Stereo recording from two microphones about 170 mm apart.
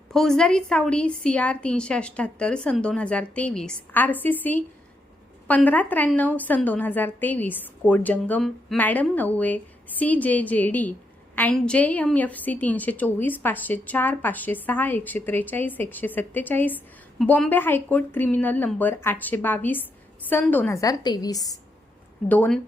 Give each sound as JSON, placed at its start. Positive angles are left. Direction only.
{"t": 0.1, "sound": "a woman's voice", "side_deg": 5}
{"t": 22.3, "sound": "a woman's voice", "side_deg": 5}